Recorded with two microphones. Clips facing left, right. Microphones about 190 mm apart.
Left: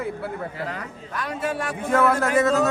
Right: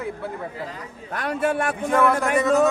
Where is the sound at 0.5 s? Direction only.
70° left (ahead or behind).